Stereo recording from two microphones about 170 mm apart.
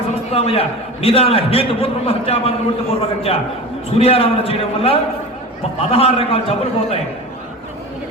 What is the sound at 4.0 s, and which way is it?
A man's voice, 35° left (ahead or behind).